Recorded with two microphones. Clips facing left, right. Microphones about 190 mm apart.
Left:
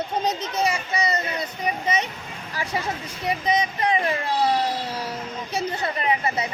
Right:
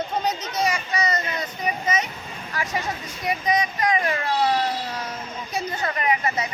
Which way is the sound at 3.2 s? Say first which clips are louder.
Even; 30° left (ahead or behind).